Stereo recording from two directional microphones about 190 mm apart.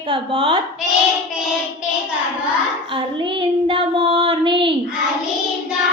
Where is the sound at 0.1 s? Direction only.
25° right (ahead or behind).